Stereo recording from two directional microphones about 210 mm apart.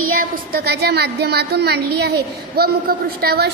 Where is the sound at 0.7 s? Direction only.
50° right (ahead or behind).